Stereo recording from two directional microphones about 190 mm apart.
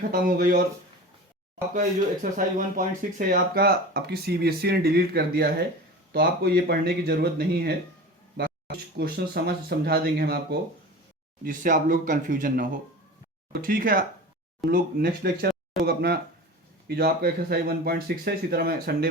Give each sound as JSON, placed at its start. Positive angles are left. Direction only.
{"t": 0.1, "sound": "speech", "side_deg": -50}
{"t": 2.3, "sound": "speech", "side_deg": -45}
{"t": 8.4, "sound": "a sound", "side_deg": -55}
{"t": 9.0, "sound": "speech", "side_deg": -55}